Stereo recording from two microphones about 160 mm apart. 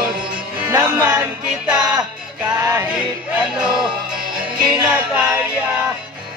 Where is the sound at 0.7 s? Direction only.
15° right (ahead or behind).